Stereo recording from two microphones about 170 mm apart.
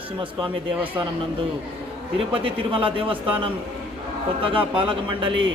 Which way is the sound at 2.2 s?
30° right (ahead or behind).